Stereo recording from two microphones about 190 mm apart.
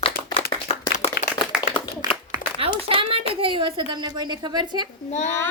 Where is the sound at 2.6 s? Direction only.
25° right (ahead or behind).